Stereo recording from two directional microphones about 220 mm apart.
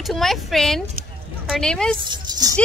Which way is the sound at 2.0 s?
20° right (ahead or behind).